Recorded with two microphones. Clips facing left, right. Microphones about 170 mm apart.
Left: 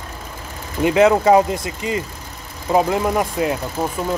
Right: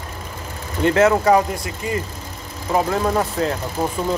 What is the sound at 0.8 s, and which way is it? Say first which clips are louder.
Speech: left 2 dB; 15° left (ahead or behind).